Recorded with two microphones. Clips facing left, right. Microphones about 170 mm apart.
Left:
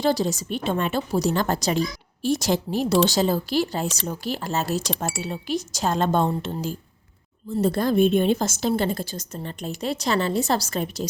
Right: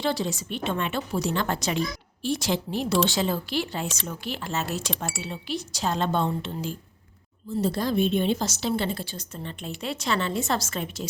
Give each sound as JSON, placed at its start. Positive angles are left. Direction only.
{"t": 0.0, "sound": "a woman's voice", "side_deg": 40}
{"t": 7.6, "sound": "a woman's voice", "side_deg": 55}